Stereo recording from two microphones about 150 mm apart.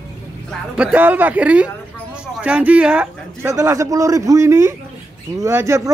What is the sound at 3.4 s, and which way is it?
A man's voice, 20° right (ahead or behind).